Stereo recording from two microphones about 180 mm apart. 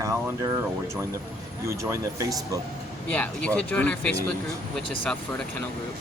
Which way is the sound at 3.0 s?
10° left (ahead or behind).